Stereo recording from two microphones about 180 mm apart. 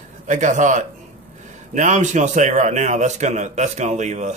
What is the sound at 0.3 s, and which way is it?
A man's voice, 45° right (ahead or behind).